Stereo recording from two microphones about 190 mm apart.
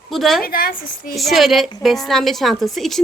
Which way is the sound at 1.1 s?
Centre (ahead or behind).